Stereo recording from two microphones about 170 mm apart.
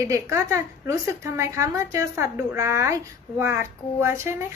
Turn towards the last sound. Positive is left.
turn(degrees=-15)  # may be behind; listen again after turning